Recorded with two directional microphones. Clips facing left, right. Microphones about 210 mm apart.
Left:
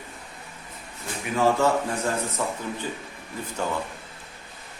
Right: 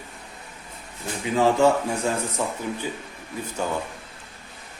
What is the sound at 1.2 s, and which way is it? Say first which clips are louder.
Speech: right 2 dB; 15° right (ahead or behind).